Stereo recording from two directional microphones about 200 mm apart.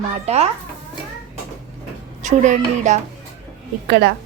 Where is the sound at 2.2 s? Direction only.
35° right (ahead or behind).